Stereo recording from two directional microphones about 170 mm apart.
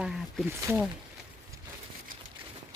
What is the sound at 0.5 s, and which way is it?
Speech, 15° right (ahead or behind).